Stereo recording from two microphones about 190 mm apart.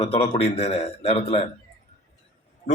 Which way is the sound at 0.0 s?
30° left (ahead or behind).